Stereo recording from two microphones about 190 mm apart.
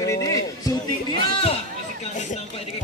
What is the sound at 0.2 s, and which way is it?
Music, 20° left (ahead or behind).